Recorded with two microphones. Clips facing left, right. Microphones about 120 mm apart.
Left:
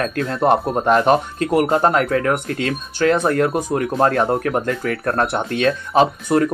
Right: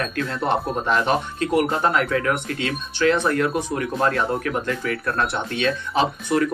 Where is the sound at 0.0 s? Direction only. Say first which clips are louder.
Left 6 dB; 45° left (ahead or behind).